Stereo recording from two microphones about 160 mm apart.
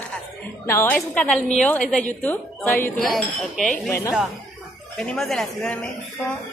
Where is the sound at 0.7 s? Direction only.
15° left (ahead or behind).